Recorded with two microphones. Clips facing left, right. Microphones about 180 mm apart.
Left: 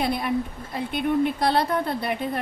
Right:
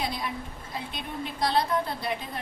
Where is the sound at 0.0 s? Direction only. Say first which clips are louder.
Left 8 dB; 60° left (ahead or behind).